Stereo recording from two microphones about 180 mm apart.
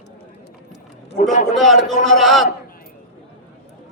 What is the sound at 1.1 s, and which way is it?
Speech, 45° left (ahead or behind).